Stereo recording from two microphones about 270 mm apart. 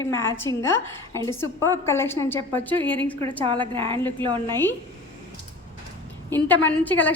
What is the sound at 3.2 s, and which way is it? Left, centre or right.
Speech, centre.